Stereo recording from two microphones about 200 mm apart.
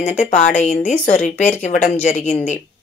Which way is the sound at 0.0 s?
35° left (ahead or behind).